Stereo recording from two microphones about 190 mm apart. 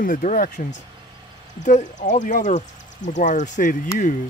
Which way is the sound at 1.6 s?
40° left (ahead or behind).